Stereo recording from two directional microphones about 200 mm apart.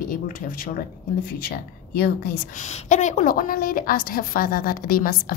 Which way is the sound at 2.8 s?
40° left (ahead or behind).